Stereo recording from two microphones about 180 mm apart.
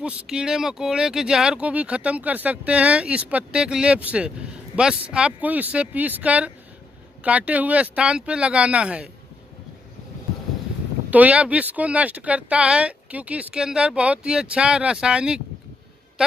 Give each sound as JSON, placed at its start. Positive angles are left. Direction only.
{"t": 0.0, "sound": "speech", "side_deg": -5}
{"t": 11.1, "sound": "speech", "side_deg": -10}